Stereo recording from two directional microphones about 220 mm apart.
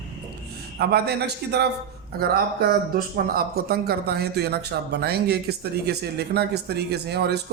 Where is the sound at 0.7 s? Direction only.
45° right (ahead or behind).